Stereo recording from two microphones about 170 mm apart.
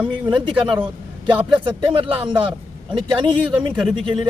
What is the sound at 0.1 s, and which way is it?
A man's voice, 30° right (ahead or behind).